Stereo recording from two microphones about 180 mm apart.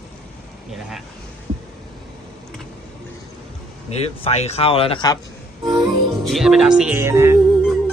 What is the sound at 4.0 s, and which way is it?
Speech, 35° left (ahead or behind).